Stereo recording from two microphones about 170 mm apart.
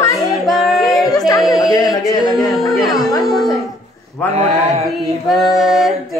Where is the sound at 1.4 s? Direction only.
Centre (ahead or behind).